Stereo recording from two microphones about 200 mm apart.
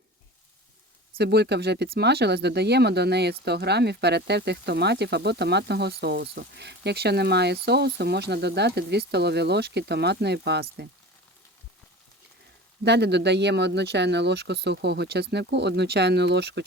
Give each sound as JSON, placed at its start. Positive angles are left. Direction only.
{"t": 1.2, "sound": "speech", "side_deg": -55}
{"t": 12.8, "sound": "speech", "side_deg": -55}